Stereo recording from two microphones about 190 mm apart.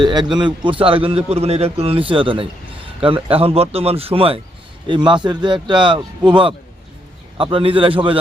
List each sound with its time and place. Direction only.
0.0 s a man's voice: 25° right (ahead or behind)